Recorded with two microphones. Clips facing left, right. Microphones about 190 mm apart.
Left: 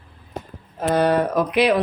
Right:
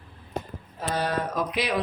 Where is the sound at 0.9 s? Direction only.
60° left (ahead or behind).